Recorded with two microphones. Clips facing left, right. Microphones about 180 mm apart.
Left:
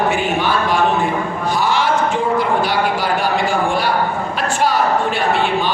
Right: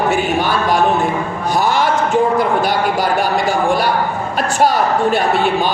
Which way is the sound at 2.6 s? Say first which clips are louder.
Right 2 dB; 45° right (ahead or behind).